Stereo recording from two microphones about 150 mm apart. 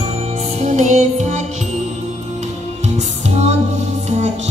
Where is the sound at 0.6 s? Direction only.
50° right (ahead or behind).